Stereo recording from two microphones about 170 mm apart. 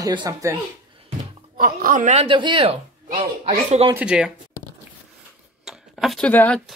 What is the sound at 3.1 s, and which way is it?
Speech, 45° right (ahead or behind).